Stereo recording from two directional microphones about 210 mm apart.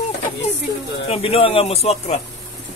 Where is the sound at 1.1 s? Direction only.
25° left (ahead or behind).